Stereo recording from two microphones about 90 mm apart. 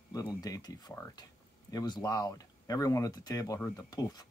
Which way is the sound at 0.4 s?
45° left (ahead or behind).